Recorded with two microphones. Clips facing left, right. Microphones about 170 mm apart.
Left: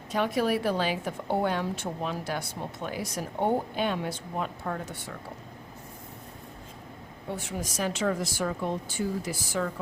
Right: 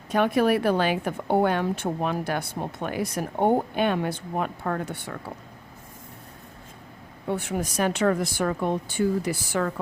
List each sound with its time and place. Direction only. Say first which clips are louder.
0.1 s a woman's voice: right 5 dB; 60° right (ahead or behind)
7.3 s a woman's voice: right 7 dB; 60° right (ahead or behind)